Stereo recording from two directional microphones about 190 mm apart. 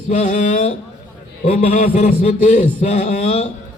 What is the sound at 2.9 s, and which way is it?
Speech, 40° left (ahead or behind).